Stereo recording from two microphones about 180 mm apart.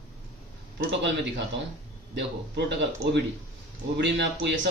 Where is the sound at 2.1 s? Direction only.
75° right (ahead or behind).